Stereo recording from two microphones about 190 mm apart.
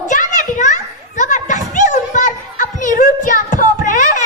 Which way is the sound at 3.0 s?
40° left (ahead or behind).